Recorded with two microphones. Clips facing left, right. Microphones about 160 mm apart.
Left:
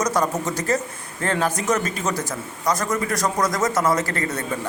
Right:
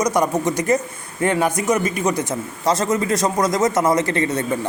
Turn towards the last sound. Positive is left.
turn(degrees=-20)  # may be behind; listen again after turning